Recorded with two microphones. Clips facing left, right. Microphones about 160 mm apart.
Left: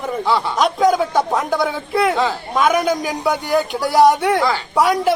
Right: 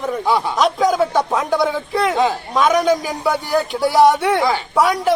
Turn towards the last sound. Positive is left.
turn(degrees=0)  # may be behind; listen again after turning